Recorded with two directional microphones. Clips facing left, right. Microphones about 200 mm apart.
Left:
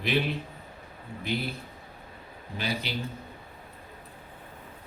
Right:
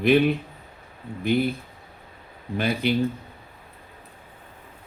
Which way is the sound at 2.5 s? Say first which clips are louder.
Right 9 dB; 55° right (ahead or behind).